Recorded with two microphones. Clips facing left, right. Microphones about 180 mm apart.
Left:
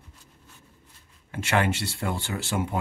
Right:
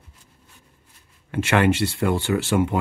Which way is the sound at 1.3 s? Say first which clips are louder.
Right 6 dB; 65° right (ahead or behind).